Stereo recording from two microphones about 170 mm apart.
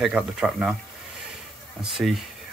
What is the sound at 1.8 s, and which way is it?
Speech, centre (ahead or behind).